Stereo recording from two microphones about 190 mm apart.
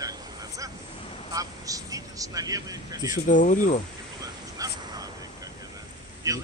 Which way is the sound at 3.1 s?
40° left (ahead or behind).